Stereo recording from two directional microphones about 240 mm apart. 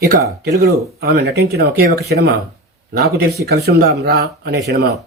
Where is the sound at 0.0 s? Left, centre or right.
Right.